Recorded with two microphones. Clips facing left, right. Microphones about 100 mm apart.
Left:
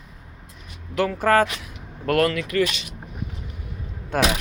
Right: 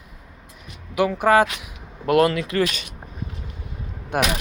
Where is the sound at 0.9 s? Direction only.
15° right (ahead or behind).